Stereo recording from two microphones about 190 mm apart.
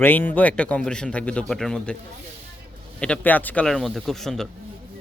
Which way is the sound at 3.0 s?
5° left (ahead or behind).